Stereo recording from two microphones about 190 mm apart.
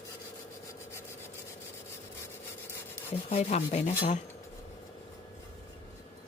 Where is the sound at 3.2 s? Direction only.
35° left (ahead or behind).